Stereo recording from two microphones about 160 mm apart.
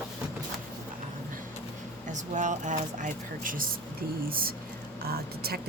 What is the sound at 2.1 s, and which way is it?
Speech, 50° right (ahead or behind).